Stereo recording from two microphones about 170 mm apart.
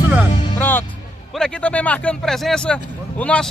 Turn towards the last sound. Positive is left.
turn(degrees=5)  # may be behind; listen again after turning